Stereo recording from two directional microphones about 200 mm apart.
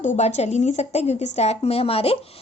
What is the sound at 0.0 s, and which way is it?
Speech, 35° left (ahead or behind).